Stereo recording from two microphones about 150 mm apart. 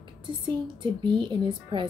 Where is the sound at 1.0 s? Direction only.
30° right (ahead or behind).